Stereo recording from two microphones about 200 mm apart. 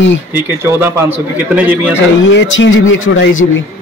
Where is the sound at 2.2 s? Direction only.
65° left (ahead or behind).